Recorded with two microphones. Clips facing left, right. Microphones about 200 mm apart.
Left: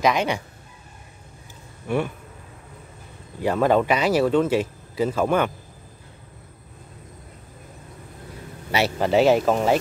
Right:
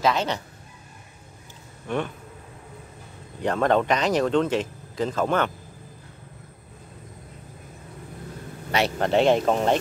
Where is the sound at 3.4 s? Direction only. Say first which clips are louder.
Left 2 dB; 5° left (ahead or behind).